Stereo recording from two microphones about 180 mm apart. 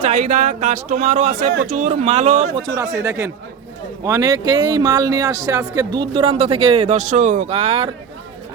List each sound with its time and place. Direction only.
0.0 s speech: 45° right (ahead or behind)
2.6 s speech: 20° right (ahead or behind)